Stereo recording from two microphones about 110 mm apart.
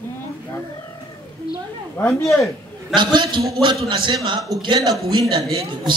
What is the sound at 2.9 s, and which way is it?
A man's voice, 45° right (ahead or behind).